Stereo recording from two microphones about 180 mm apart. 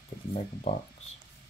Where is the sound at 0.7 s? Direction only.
35° left (ahead or behind).